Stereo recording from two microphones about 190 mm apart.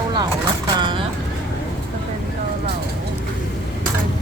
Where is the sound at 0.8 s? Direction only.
25° right (ahead or behind).